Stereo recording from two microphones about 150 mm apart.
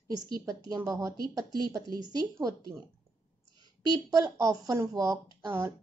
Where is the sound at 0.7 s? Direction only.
25° right (ahead or behind).